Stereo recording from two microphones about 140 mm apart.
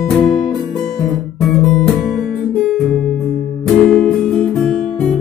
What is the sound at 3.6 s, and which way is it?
Music, centre (ahead or behind).